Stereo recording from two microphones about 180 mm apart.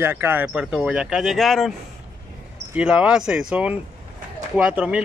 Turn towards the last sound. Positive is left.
turn(degrees=-5)  # may be behind; listen again after turning